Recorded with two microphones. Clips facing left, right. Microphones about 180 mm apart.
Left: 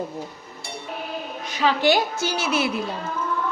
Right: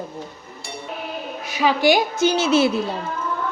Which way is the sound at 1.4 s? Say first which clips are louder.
Right 2 dB; 10° right (ahead or behind).